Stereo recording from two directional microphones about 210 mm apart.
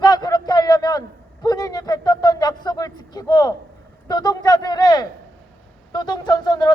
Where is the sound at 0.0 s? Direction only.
20° left (ahead or behind).